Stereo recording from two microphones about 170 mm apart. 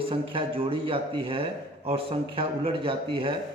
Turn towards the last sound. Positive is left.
turn(degrees=-35)  # may be behind; listen again after turning